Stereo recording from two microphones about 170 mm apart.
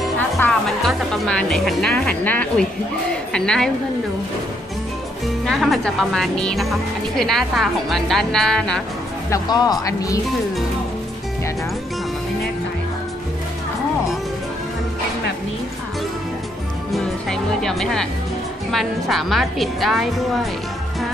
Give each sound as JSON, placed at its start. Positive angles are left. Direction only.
{"t": 0.4, "sound": "speech", "side_deg": 5}
{"t": 5.4, "sound": "speech", "side_deg": 0}
{"t": 9.3, "sound": "speech", "side_deg": 25}
{"t": 16.9, "sound": "music", "side_deg": 5}
{"t": 18.7, "sound": "speech", "side_deg": 0}